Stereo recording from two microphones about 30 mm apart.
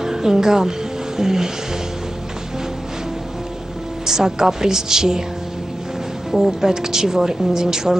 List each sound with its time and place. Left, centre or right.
0.0 s music: centre
4.0 s speech: centre
6.3 s speech: centre
6.7 s speech: centre